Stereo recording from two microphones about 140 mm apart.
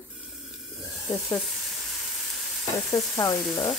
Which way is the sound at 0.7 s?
Centre (ahead or behind).